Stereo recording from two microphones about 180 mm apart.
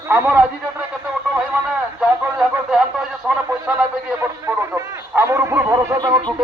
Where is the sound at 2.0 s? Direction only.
5° right (ahead or behind).